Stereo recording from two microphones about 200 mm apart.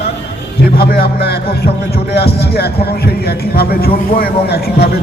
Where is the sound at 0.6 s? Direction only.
50° left (ahead or behind).